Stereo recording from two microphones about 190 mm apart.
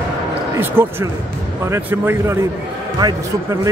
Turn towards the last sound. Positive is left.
turn(degrees=-20)  # may be behind; listen again after turning